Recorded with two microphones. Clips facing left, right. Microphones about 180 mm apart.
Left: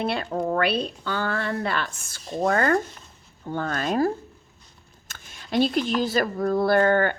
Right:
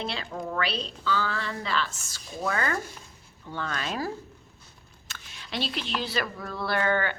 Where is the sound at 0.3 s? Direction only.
45° left (ahead or behind).